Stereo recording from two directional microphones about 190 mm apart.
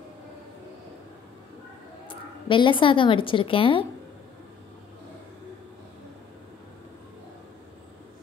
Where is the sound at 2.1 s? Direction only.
25° left (ahead or behind).